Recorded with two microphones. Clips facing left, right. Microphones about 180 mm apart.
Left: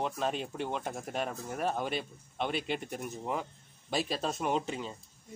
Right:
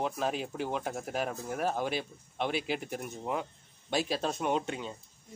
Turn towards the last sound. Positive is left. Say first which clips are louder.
# right 1 dB
turn(degrees=0)  # may be behind; listen again after turning